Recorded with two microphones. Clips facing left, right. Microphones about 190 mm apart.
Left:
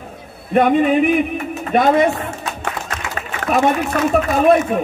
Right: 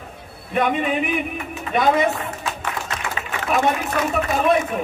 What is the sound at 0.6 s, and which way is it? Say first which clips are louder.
Speech: left 7 dB; 45° left (ahead or behind).